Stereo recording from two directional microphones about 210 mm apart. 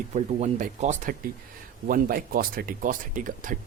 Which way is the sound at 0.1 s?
30° right (ahead or behind).